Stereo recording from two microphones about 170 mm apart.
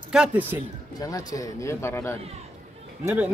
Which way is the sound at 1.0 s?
20° left (ahead or behind).